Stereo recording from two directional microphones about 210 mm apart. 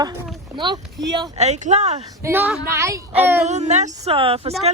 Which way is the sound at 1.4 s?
35° right (ahead or behind).